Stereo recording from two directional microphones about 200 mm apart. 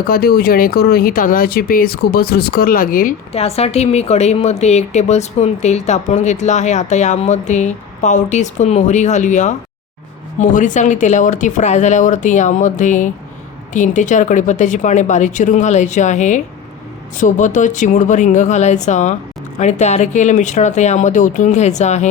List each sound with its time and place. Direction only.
0.1 s speech: 50° left (ahead or behind)
3.3 s a woman's voice: 30° left (ahead or behind)